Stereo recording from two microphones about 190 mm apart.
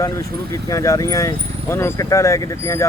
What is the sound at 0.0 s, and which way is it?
Speech, 15° left (ahead or behind).